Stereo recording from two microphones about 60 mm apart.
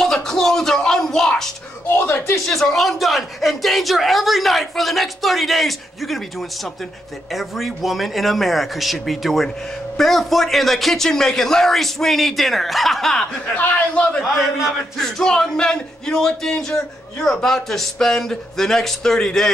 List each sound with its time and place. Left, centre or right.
0.0 s a sound: centre
1.9 s a man's voice: left
2.4 s speech: centre
13.6 s a man's voice: left
14.2 s speech: centre
15.0 s speech: centre